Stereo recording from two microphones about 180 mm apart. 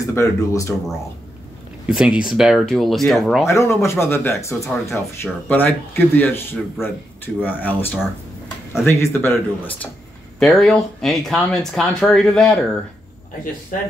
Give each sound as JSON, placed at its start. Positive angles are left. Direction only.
{"t": 0.0, "sound": "speech", "side_deg": 15}
{"t": 1.9, "sound": "speech", "side_deg": -5}
{"t": 3.4, "sound": "speech", "side_deg": 15}